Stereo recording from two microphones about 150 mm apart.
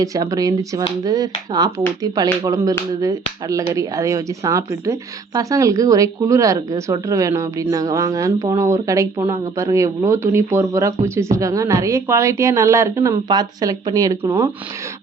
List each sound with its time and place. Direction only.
0.0 s speech: 25° right (ahead or behind)